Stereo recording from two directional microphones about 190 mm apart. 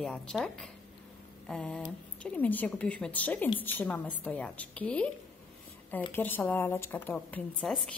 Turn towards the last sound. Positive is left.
turn(degrees=0)  # may be behind; listen again after turning